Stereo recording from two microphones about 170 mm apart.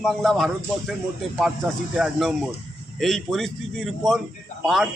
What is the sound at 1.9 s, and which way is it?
A man's voice, 5° right (ahead or behind).